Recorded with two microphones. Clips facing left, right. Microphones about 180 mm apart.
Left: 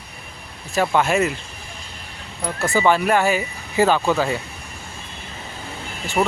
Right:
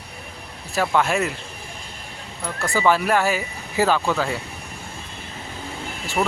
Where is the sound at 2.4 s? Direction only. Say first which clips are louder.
Left 2 dB; 25° left (ahead or behind).